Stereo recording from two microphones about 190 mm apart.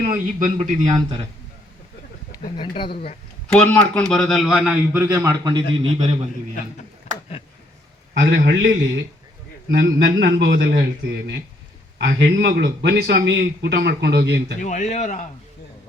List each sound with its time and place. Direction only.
0.0 s a man's voice: 45° right (ahead or behind)
0.9 s a man's voice: 20° right (ahead or behind)
2.6 s speech: 25° left (ahead or behind)
3.5 s a man's voice: 5° left (ahead or behind); by 6.1 s 25° right (ahead or behind)
8.4 s a man's voice: 65° right (ahead or behind)
14.6 s a man's voice: 40° left (ahead or behind)